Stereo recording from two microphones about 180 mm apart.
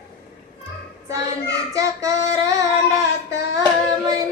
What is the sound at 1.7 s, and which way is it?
Child singing, 20° right (ahead or behind).